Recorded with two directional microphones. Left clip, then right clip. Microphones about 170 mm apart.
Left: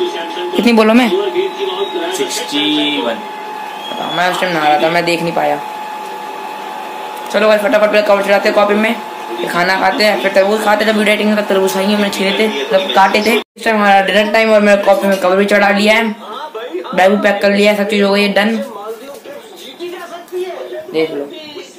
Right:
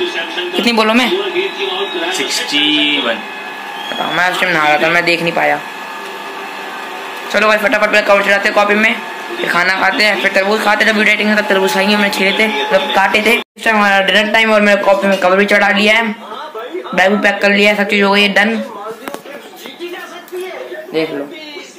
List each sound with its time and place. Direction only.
0.6 s speech: 70° left (ahead or behind)
2.2 s speech: 15° left (ahead or behind)
4.1 s speech: 10° left (ahead or behind)
7.3 s a man's voice: 15° left (ahead or behind)